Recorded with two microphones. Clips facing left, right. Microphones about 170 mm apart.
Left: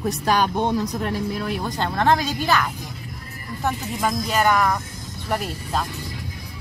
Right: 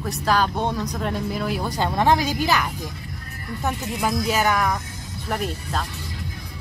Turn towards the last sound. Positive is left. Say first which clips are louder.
# left 2 dB
turn(degrees=-5)  # may be behind; listen again after turning